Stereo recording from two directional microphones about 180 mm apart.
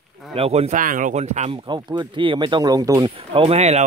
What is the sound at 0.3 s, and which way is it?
Speech, 35° right (ahead or behind).